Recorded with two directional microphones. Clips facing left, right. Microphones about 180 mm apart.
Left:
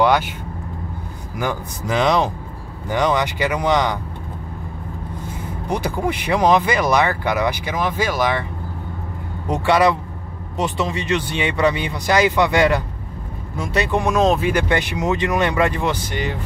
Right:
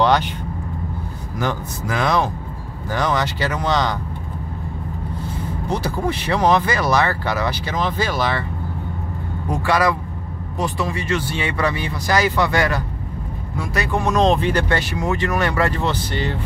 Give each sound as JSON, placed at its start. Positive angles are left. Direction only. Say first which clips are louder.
{"t": 0.0, "sound": "vehicle", "louder": "even", "side_deg": 10}
{"t": 1.4, "sound": "speech", "louder": "even", "side_deg": 10}
{"t": 5.7, "sound": "speech", "louder": "left 1 dB", "side_deg": 15}
{"t": 9.5, "sound": "speech", "louder": "left 3 dB", "side_deg": 20}